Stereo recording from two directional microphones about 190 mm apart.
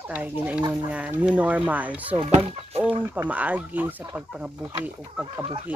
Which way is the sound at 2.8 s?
10° right (ahead or behind).